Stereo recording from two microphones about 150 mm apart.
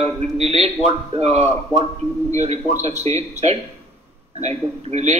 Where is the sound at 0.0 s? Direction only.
45° right (ahead or behind).